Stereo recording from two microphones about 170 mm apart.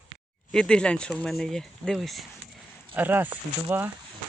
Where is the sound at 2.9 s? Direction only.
10° right (ahead or behind).